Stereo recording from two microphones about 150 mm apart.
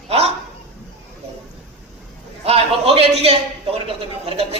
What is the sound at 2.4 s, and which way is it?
A man's voice, 40° right (ahead or behind).